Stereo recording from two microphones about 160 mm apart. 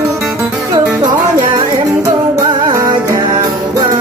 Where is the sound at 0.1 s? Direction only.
15° right (ahead or behind).